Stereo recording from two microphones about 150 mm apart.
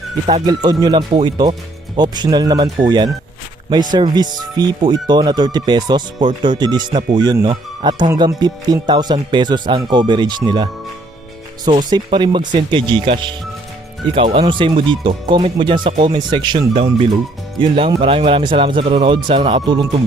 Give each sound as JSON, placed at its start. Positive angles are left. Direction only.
{"t": 0.4, "sound": "speech", "side_deg": -25}
{"t": 11.9, "sound": "speech", "side_deg": -30}